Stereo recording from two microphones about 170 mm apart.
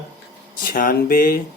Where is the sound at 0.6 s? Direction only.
60° left (ahead or behind).